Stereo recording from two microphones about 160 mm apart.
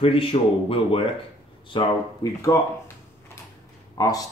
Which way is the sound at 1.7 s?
25° left (ahead or behind).